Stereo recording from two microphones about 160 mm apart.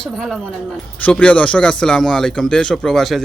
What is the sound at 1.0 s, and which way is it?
Speech, 5° left (ahead or behind).